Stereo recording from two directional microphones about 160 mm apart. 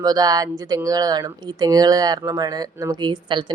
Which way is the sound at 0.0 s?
25° right (ahead or behind).